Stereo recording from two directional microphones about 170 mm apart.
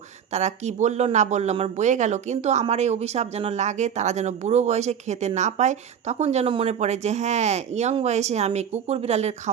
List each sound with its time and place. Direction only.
0.3 s speech: 40° right (ahead or behind)